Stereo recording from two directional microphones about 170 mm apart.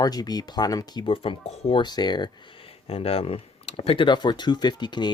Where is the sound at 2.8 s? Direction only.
35° left (ahead or behind).